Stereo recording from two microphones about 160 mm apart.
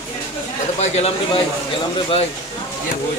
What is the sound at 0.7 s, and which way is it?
Speech, 40° left (ahead or behind).